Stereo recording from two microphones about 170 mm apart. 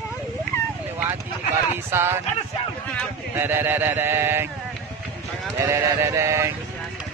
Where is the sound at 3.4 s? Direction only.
10° right (ahead or behind).